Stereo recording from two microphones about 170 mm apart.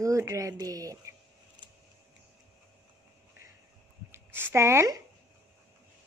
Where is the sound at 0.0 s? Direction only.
20° right (ahead or behind).